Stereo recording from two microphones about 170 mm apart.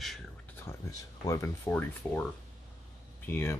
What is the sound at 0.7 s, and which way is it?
Speech, 20° left (ahead or behind).